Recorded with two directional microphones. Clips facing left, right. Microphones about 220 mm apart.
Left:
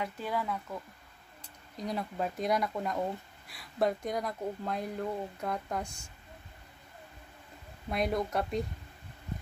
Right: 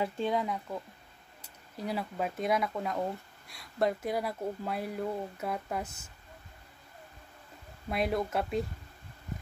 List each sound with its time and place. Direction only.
0.0 s speech: 20° right (ahead or behind)
1.4 s speech: 5° right (ahead or behind)
7.9 s speech: 5° right (ahead or behind)